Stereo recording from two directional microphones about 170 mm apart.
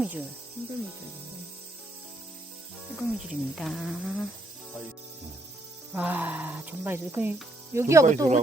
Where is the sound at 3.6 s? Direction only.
Centre (ahead or behind).